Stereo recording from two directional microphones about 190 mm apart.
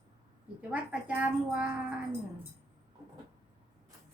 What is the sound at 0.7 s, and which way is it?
Speech, 5° right (ahead or behind).